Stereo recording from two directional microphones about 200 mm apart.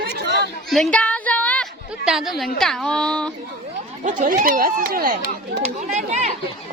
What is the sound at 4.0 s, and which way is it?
Speech, 40° right (ahead or behind).